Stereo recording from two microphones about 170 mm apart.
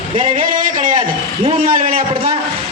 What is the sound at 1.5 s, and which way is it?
Speech, 55° right (ahead or behind).